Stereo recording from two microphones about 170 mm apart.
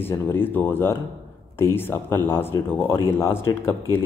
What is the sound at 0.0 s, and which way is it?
A man's voice, 15° left (ahead or behind).